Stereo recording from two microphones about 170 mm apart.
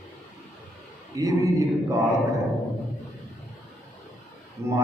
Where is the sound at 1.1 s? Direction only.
20° right (ahead or behind).